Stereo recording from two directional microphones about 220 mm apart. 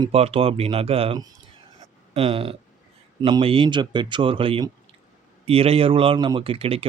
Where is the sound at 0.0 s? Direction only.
25° right (ahead or behind).